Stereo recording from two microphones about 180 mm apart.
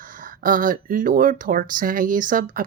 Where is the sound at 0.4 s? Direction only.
50° right (ahead or behind).